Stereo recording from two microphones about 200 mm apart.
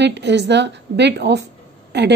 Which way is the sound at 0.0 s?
60° right (ahead or behind).